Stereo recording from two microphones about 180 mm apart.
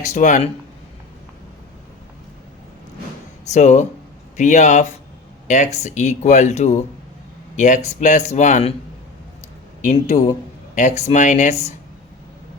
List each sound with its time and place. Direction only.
0.1 s speech: 45° left (ahead or behind)
3.5 s speech: 40° left (ahead or behind)
9.8 s speech: 40° left (ahead or behind)